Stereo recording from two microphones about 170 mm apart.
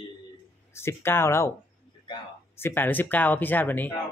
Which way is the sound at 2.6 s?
15° left (ahead or behind).